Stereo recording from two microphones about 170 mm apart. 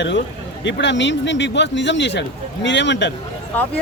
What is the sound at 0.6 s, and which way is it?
Speech, 90° left.